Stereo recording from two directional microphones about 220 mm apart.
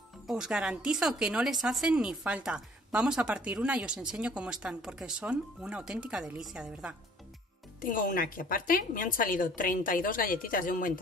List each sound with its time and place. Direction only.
0.3 s speech: 5° right (ahead or behind)
7.8 s a woman's voice: 35° left (ahead or behind)